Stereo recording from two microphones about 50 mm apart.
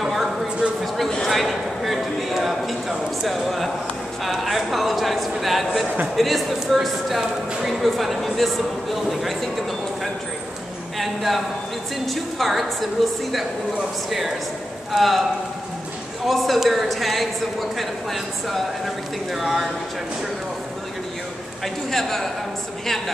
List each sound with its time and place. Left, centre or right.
0.0 s a sound: centre
4.2 s speech: centre
11.0 s speech: centre
14.9 s speech: centre
16.3 s speech: centre
21.9 s speech: centre